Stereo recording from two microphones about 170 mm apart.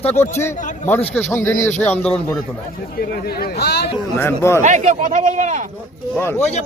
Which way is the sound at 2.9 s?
65° left (ahead or behind).